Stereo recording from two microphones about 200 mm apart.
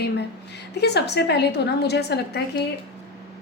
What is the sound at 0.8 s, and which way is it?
A woman's voice, 55° left (ahead or behind).